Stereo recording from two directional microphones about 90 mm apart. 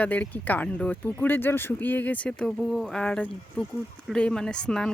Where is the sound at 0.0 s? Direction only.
20° left (ahead or behind).